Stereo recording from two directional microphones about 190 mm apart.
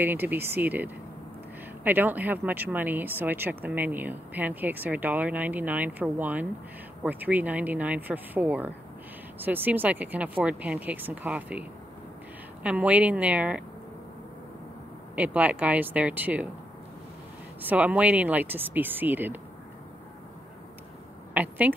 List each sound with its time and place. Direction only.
0.0 s speech: 10° right (ahead or behind)
12.6 s speech: 5° right (ahead or behind)
15.1 s speech: 5° right (ahead or behind)
17.6 s speech: 10° right (ahead or behind)
21.3 s speech: 10° right (ahead or behind)